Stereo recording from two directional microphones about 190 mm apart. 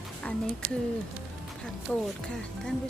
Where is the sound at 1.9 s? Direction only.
5° left (ahead or behind).